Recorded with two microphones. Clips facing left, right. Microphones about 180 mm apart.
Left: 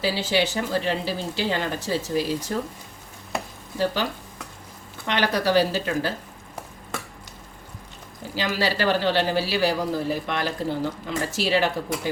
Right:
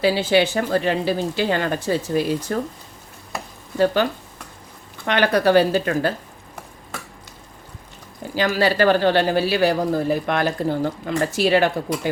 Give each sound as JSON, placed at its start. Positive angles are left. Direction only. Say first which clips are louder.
{"t": 0.0, "sound": "speech", "louder": "right 6 dB", "side_deg": -55}
{"t": 5.0, "sound": "speech", "louder": "right 5 dB", "side_deg": -55}
{"t": 8.4, "sound": "speech", "louder": "right 6 dB", "side_deg": -55}